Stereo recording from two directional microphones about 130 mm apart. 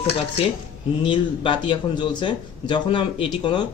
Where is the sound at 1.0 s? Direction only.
40° left (ahead or behind).